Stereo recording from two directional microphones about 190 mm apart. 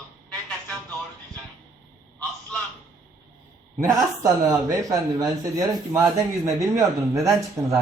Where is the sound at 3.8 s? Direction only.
15° right (ahead or behind).